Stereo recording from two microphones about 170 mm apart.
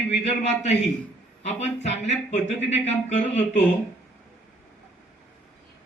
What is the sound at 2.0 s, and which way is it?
Speech, 40° left (ahead or behind).